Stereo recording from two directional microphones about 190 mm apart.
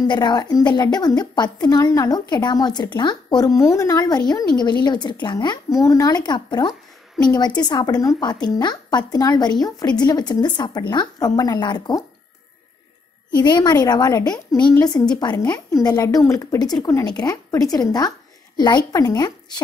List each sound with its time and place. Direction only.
0.1 s a woman's voice: 25° left (ahead or behind)
13.4 s a woman's voice: 20° left (ahead or behind)